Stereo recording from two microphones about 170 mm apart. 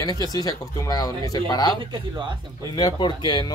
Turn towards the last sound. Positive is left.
turn(degrees=25)  # may be behind; listen again after turning